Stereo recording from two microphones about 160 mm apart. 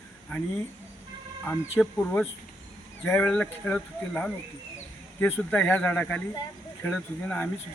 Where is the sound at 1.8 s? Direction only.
5° left (ahead or behind).